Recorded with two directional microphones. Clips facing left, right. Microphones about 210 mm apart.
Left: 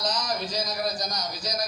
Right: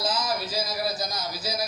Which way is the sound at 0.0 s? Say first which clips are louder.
Right 1 dB; 5° right (ahead or behind).